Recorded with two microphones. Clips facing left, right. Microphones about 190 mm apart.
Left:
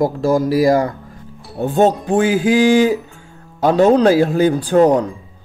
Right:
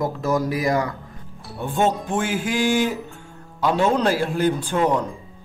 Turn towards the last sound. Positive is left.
turn(degrees=40)  # may be behind; listen again after turning